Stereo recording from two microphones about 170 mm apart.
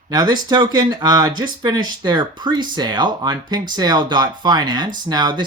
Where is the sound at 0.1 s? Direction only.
25° right (ahead or behind).